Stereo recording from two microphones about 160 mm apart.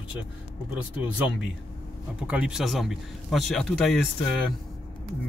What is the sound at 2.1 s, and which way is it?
Speech, 5° right (ahead or behind).